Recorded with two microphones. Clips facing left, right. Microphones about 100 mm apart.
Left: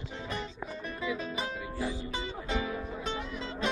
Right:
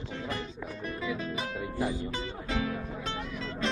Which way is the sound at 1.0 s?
15° left (ahead or behind).